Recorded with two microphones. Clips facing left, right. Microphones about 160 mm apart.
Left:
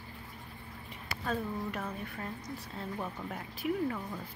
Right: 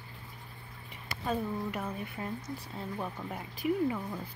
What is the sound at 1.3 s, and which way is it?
Speech, 5° right (ahead or behind).